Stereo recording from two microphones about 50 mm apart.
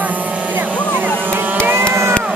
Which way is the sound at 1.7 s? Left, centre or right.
Right.